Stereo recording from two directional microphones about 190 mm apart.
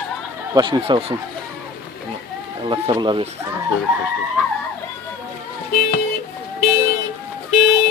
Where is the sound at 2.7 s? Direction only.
25° right (ahead or behind).